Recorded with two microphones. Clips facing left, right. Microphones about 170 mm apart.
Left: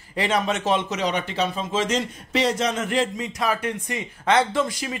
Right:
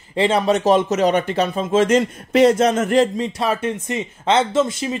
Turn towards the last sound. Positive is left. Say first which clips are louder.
# right 5 dB
turn(degrees=-25)  # may be behind; listen again after turning